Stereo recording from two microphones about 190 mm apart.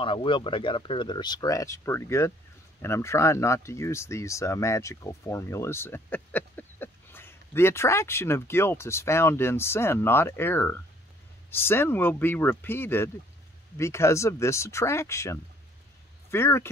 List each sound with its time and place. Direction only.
0.0 s speech: 25° left (ahead or behind)